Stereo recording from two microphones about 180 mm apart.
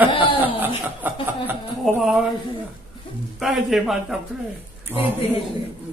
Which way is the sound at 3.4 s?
Centre (ahead or behind).